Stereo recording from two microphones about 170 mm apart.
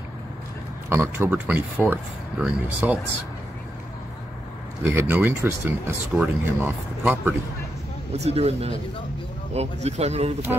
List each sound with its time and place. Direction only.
0.8 s speech: 15° right (ahead or behind)
4.8 s speech: 15° right (ahead or behind)
8.1 s speech: 40° right (ahead or behind)